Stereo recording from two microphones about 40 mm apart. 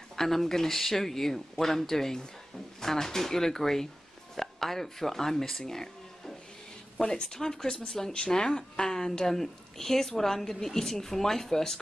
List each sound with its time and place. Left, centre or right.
0.1 s a woman's voice: centre